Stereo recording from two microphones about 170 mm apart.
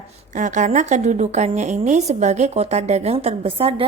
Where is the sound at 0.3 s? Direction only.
45° right (ahead or behind).